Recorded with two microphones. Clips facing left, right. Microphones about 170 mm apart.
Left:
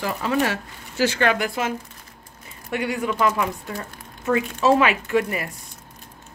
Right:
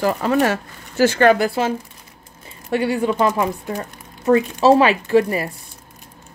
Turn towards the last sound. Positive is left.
turn(degrees=-30)  # may be behind; listen again after turning